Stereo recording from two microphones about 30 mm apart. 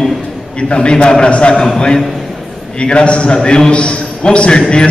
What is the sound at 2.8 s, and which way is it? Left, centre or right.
A man's voice, left.